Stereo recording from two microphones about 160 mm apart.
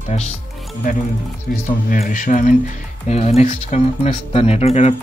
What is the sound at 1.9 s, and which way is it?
Speech, 60° left (ahead or behind).